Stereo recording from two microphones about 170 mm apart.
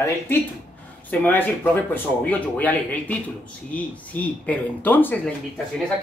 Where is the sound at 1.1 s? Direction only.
10° left (ahead or behind).